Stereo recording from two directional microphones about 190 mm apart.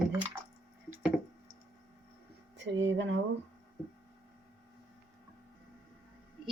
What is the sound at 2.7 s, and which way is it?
Speech, 70° right (ahead or behind).